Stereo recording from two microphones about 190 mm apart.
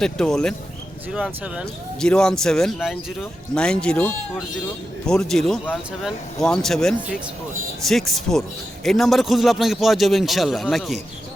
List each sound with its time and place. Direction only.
0.0 s a man's voice: 5° left (ahead or behind)